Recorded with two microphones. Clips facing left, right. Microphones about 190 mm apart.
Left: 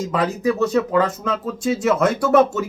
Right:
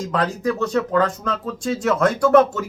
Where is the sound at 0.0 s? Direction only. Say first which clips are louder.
Left 2 dB; 5° left (ahead or behind).